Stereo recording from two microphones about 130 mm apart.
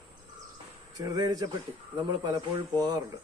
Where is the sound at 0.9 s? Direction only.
30° right (ahead or behind).